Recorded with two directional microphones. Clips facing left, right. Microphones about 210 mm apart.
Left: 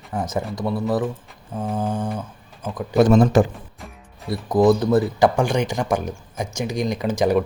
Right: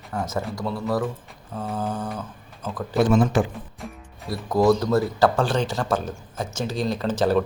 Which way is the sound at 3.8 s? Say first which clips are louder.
Right 3 dB; centre (ahead or behind).